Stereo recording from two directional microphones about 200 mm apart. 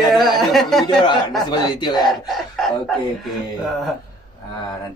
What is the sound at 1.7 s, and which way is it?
Speech, 20° left (ahead or behind).